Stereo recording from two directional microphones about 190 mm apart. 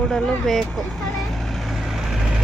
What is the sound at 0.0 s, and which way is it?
Vehicle, 5° left (ahead or behind).